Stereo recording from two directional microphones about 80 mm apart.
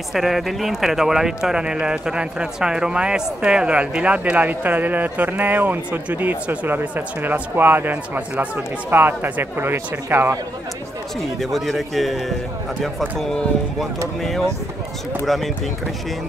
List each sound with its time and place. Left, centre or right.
0.1 s speech: centre; by 10.4 s right
11.5 s a man's voice: centre
15.2 s a man's voice: centre